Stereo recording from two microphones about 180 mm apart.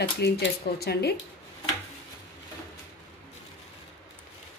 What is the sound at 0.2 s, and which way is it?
Speech, 65° left (ahead or behind).